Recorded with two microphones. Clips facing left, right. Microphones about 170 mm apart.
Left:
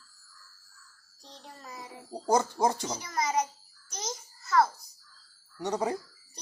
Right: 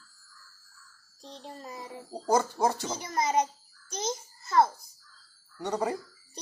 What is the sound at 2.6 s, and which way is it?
Speech, 5° left (ahead or behind).